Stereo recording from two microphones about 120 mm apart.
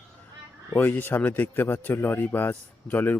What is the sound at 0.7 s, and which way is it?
Speech, 15° left (ahead or behind).